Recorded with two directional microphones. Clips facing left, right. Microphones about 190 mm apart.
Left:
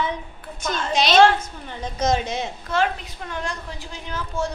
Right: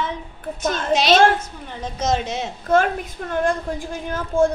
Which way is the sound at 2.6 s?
50° right (ahead or behind).